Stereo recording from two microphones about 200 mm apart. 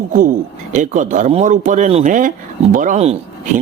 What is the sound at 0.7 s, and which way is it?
Speech, 40° right (ahead or behind).